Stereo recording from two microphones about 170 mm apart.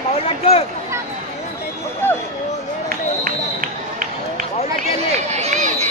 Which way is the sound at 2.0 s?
15° left (ahead or behind).